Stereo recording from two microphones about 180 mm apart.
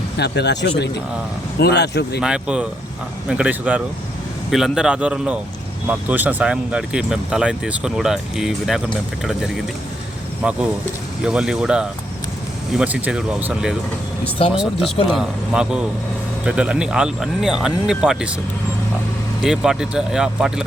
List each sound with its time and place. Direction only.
0.2 s speech: 70° left (ahead or behind)
2.2 s speech: 5° right (ahead or behind)
10.4 s speech: 5° right (ahead or behind)
19.4 s speech: 5° right (ahead or behind)